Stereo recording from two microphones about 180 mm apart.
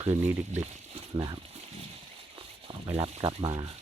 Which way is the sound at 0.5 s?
40° right (ahead or behind).